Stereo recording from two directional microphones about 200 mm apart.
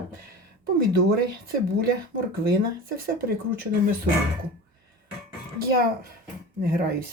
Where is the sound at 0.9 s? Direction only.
50° right (ahead or behind).